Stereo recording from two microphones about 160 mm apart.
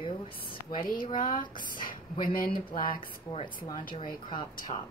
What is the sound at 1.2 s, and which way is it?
Speech, 55° left (ahead or behind).